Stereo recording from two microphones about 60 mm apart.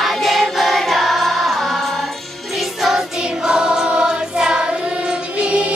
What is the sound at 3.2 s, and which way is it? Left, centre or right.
Choir, centre.